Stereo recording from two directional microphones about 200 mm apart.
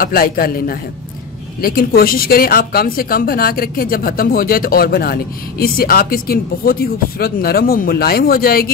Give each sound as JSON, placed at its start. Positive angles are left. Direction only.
{"t": 0.0, "sound": "a woman's voice", "side_deg": 45}